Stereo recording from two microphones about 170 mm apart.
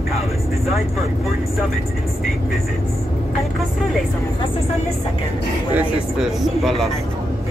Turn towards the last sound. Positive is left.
turn(degrees=0)  # may be behind; listen again after turning